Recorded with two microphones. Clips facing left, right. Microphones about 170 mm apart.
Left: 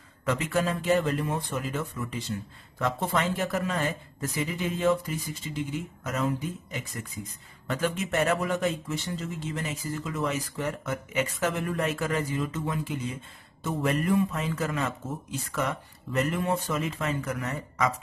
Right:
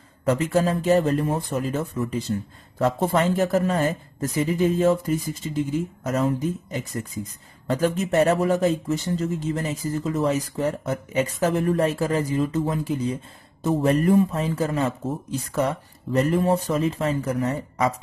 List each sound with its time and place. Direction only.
0.2 s speech: 35° right (ahead or behind)